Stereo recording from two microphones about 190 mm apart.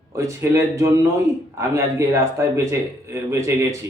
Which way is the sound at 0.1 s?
15° right (ahead or behind).